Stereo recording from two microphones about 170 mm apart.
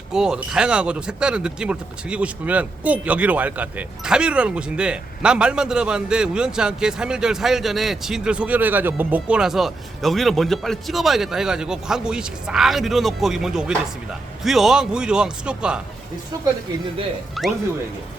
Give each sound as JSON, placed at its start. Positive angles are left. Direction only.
{"t": 0.1, "sound": "speech", "side_deg": -5}
{"t": 17.4, "sound": "speech", "side_deg": 0}